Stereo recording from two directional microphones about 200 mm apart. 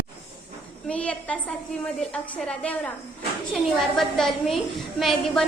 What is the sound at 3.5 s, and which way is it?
A woman's voice, centre (ahead or behind).